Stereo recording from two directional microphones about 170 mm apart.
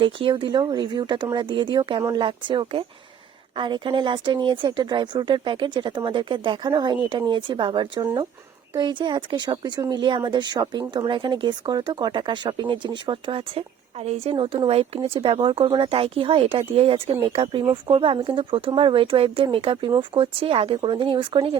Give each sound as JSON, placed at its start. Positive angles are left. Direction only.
{"t": 0.0, "sound": "speech", "side_deg": -30}